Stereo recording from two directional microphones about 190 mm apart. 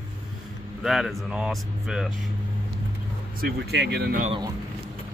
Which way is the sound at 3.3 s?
55° right (ahead or behind).